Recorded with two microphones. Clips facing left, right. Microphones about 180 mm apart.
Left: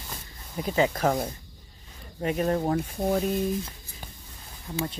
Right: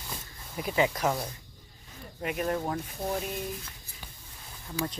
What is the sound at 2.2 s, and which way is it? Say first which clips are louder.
Speech: left 5 dB; 35° left (ahead or behind).